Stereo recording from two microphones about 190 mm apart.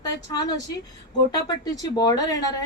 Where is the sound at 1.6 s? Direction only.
20° left (ahead or behind).